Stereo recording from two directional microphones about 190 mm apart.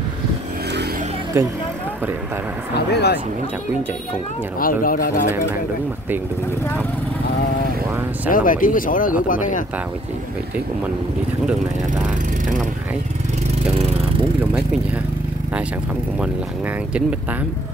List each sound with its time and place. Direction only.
2.9 s speech: 60° left (ahead or behind)
4.6 s speech: 50° left (ahead or behind)
8.3 s speech: 45° left (ahead or behind)